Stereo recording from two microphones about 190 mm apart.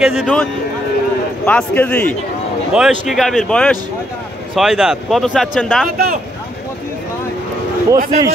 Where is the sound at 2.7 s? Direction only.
5° right (ahead or behind).